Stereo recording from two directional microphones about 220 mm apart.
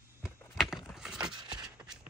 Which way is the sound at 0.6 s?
Centre (ahead or behind).